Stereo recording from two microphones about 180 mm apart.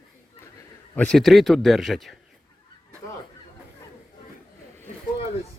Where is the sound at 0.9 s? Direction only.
5° left (ahead or behind).